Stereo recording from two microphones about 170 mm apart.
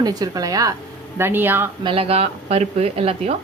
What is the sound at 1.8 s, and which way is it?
Speech, 35° right (ahead or behind).